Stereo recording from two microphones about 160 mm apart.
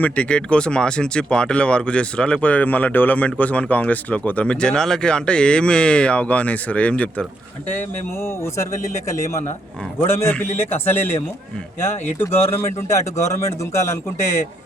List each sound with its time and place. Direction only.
0.0 s speech: 5° left (ahead or behind)
12.2 s speech: 15° left (ahead or behind)